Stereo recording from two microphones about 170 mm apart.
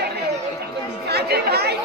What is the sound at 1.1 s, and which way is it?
Chatter, 70° right (ahead or behind).